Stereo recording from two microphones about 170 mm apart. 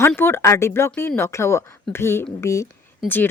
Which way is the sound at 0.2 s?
15° left (ahead or behind).